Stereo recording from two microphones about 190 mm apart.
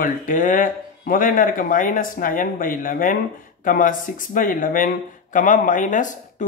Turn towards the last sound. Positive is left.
turn(degrees=40)  # may be behind; listen again after turning